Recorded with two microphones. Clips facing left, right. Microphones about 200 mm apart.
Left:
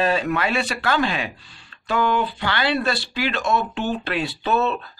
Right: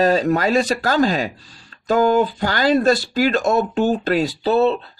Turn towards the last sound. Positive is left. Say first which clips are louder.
# right 5 dB
turn(degrees=-30)  # may be behind; listen again after turning